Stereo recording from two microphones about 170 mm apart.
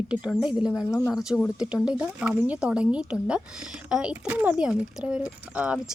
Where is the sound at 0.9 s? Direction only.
15° left (ahead or behind).